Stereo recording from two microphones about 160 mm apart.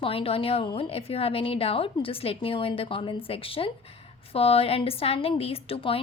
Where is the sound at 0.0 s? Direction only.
35° left (ahead or behind).